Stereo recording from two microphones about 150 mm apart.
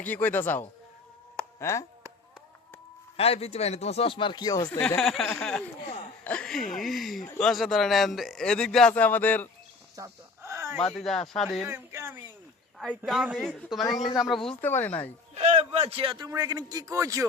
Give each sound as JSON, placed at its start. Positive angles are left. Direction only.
{"t": 0.0, "sound": "a man's voice", "side_deg": 10}
{"t": 3.2, "sound": "speech", "side_deg": 40}
{"t": 4.9, "sound": "a man's voice", "side_deg": 5}
{"t": 9.9, "sound": "a sound", "side_deg": -20}
{"t": 10.8, "sound": "a man's voice", "side_deg": 0}
{"t": 11.7, "sound": "speech", "side_deg": -15}
{"t": 13.1, "sound": "a man's voice", "side_deg": 0}
{"t": 14.6, "sound": "a man's voice", "side_deg": 15}
{"t": 15.4, "sound": "a man's voice", "side_deg": -45}